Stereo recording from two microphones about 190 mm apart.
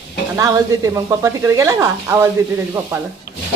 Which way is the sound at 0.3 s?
15° right (ahead or behind).